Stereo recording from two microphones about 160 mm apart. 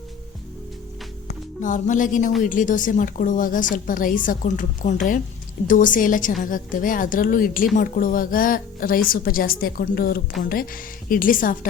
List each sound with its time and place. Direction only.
1.6 s speech: 55° left (ahead or behind)